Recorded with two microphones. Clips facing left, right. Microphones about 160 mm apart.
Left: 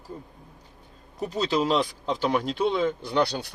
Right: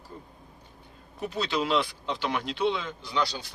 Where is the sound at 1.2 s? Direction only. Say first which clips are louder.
Left 4 dB; 40° left (ahead or behind); by 3.5 s 60° left (ahead or behind).